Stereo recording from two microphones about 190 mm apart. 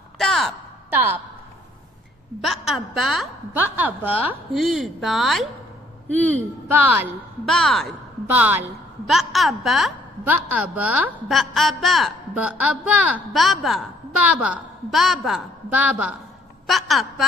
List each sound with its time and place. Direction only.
0.2 s a sound: centre (ahead or behind)
0.8 s a woman's voice: 10° right (ahead or behind)
2.4 s a woman's voice: centre (ahead or behind)
6.7 s a woman's voice: 10° right (ahead or behind)
7.4 s a woman's voice: centre (ahead or behind)